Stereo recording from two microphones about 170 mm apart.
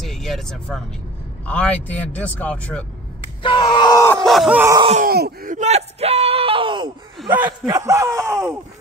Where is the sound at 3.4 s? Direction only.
25° left (ahead or behind).